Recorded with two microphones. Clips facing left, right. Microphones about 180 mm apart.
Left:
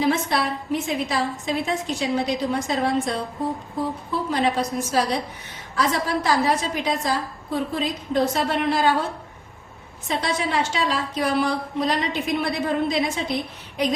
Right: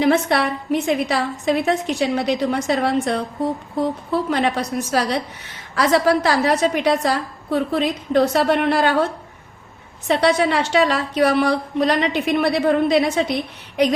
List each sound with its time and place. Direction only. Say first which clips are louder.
0.0 s a woman's voice: right 5 dB; 65° right (ahead or behind)
10.1 s a woman's voice: right 8 dB; 70° right (ahead or behind)